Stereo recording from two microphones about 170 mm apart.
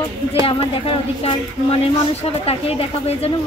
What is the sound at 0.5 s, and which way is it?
Speech, 35° left (ahead or behind).